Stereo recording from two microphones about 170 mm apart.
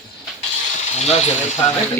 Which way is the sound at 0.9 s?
40° left (ahead or behind).